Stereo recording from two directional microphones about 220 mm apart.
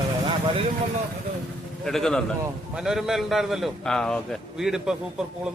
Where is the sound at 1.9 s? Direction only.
Centre (ahead or behind).